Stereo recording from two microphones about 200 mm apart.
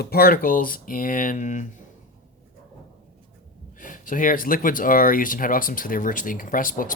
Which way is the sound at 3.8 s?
40° left (ahead or behind).